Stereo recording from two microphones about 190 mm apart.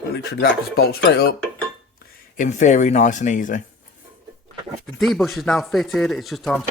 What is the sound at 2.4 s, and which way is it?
Speech, 40° left (ahead or behind).